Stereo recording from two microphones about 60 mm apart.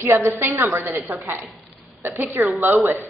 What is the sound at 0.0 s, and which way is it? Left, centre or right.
A woman's voice, right.